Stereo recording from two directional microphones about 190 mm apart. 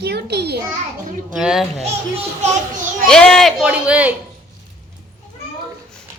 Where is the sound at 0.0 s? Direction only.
60° right (ahead or behind).